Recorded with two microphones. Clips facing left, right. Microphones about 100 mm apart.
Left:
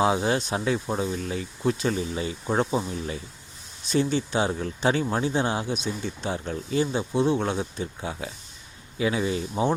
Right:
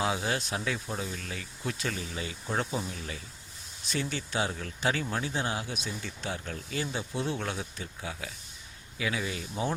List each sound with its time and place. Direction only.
0.0 s speech: 30° left (ahead or behind)